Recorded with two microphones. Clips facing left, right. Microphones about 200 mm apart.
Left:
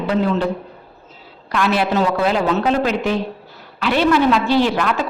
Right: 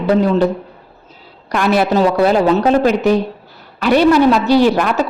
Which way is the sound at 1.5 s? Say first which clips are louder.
Right 4 dB; 45° right (ahead or behind).